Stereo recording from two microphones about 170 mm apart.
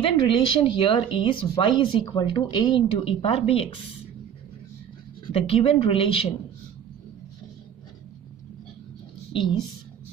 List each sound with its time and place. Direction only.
0.0 s speech: 30° left (ahead or behind)
5.2 s speech: 35° left (ahead or behind)